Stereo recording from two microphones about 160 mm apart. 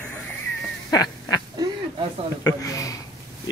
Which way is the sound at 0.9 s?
25° left (ahead or behind).